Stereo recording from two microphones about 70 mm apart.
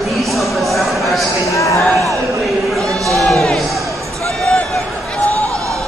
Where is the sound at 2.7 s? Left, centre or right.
Centre.